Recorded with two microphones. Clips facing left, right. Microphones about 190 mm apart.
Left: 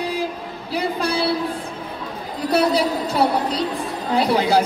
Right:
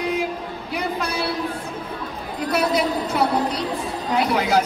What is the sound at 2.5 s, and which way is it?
A woman's voice, 30° left (ahead or behind).